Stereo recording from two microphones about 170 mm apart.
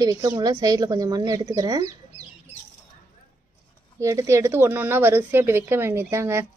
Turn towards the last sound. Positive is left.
turn(degrees=-15)  # may be behind; listen again after turning